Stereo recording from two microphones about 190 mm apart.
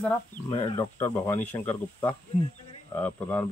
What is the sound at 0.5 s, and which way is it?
Speech, 25° left (ahead or behind).